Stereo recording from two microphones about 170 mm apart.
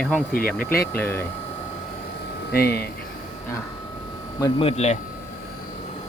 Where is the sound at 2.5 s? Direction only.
65° left (ahead or behind).